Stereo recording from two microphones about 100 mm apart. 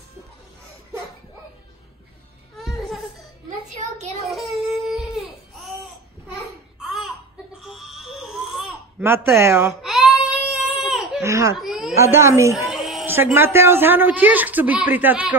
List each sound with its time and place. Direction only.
2.5 s laughter: centre (ahead or behind)
4.0 s child singing: 90° right
4.3 s baby cry: centre (ahead or behind)
6.3 s babbling: 5° right (ahead or behind)
7.6 s baby cry: 5° right (ahead or behind)
9.0 s a woman's voice: 25° right (ahead or behind)
9.8 s baby cry: 5° right (ahead or behind)
11.2 s a woman's voice: 30° right (ahead or behind)
11.5 s a sound: 5° right (ahead or behind)
12.0 s a woman's voice: 25° right (ahead or behind)
12.5 s a sound: centre (ahead or behind)
13.0 s a woman's voice: 20° right (ahead or behind)